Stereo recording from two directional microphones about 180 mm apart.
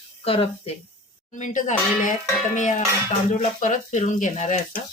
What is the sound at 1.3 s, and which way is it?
Sizzle, 45° left (ahead or behind).